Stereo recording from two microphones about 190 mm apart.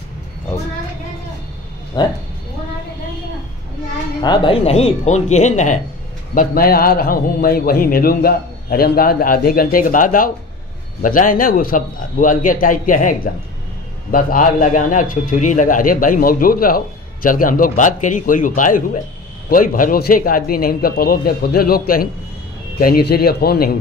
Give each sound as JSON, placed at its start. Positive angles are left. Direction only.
{"t": 2.0, "sound": "speech", "side_deg": 20}
{"t": 4.2, "sound": "speech", "side_deg": 25}
{"t": 6.3, "sound": "a man's voice", "side_deg": 50}